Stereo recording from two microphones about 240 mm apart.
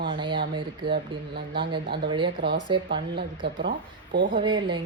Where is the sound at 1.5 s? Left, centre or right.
Centre.